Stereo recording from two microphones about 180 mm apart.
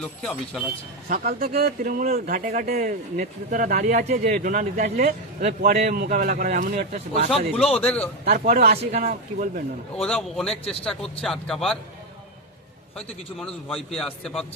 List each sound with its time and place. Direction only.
0.0 s a man's voice: 5° left (ahead or behind)
1.0 s speech: 55° right (ahead or behind)
7.3 s a man's voice: 5° left (ahead or behind)
8.2 s speech: 55° right (ahead or behind)
10.0 s a man's voice: centre (ahead or behind)
13.0 s a man's voice: 5° left (ahead or behind)